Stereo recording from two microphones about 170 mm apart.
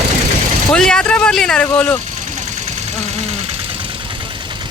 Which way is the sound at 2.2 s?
45° right (ahead or behind).